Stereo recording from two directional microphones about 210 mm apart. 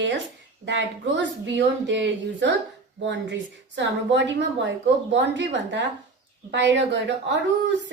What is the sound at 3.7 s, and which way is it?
A woman's voice, 60° right (ahead or behind).